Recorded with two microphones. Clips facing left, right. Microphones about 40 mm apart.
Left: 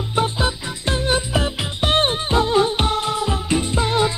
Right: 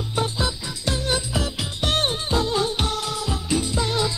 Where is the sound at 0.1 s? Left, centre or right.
Left.